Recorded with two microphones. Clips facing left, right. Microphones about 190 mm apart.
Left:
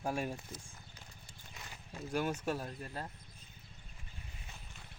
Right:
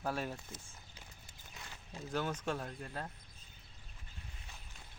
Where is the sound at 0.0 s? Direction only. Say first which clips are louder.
Left 2 dB; 10° left (ahead or behind).